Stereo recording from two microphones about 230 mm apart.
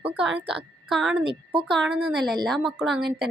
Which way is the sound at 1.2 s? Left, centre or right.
Right.